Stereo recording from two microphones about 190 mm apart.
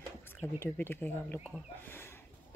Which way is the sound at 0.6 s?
10° left (ahead or behind).